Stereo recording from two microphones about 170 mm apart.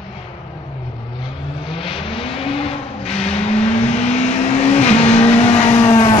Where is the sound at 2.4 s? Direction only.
35° left (ahead or behind).